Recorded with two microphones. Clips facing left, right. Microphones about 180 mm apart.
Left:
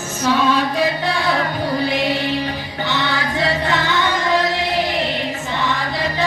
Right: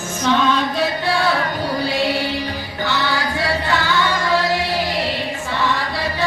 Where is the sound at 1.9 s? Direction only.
20° left (ahead or behind).